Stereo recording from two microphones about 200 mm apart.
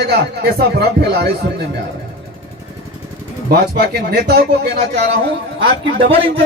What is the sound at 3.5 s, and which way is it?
A man's voice, 50° right (ahead or behind).